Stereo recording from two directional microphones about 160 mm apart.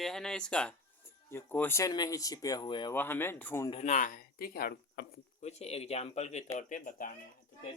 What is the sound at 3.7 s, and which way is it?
Speech, 45° left (ahead or behind).